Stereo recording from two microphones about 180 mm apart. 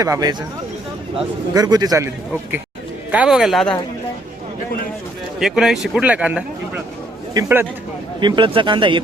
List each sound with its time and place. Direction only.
0.0 s speech: 20° right (ahead or behind)
1.5 s speech: 20° right (ahead or behind)
3.1 s speech: 5° right (ahead or behind)
5.4 s a man's voice: centre (ahead or behind)
8.2 s speech: 30° right (ahead or behind)